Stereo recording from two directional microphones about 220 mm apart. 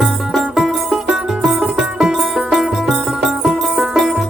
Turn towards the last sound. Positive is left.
turn(degrees=0)  # may be behind; listen again after turning